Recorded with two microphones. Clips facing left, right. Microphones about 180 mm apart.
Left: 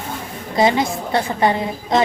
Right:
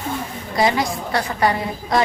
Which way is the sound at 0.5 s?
25° left (ahead or behind).